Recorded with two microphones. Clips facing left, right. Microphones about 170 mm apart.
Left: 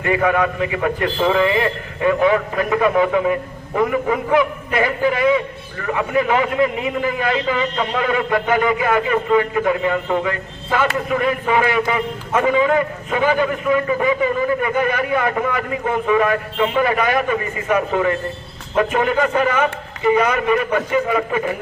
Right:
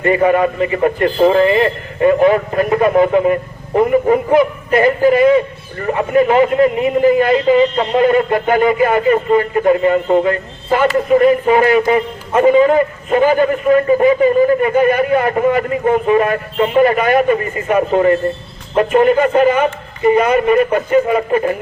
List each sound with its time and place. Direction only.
0.1 s a man's voice: 40° right (ahead or behind)